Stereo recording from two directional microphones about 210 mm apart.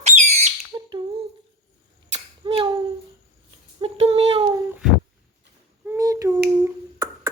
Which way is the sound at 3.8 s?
30° right (ahead or behind).